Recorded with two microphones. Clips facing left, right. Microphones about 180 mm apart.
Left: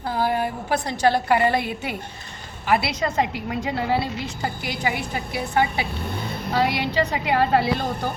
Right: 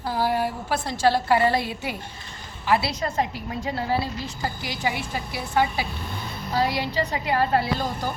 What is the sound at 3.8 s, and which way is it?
A woman's voice, 65° left (ahead or behind).